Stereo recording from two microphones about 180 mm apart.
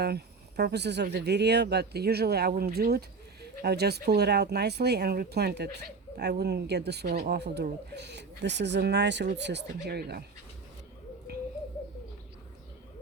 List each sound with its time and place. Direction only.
0.0 s speech: 65° right (ahead or behind)